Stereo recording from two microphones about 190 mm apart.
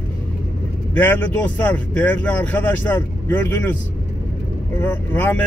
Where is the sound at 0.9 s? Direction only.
10° left (ahead or behind).